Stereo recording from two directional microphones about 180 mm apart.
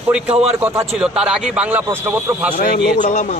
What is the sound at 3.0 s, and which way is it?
Speech, 40° left (ahead or behind).